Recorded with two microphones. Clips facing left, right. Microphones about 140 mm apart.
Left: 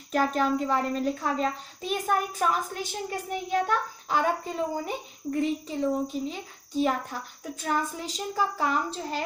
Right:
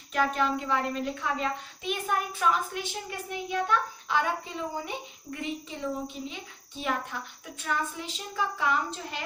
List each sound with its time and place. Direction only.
0.1 s speech: 40° left (ahead or behind)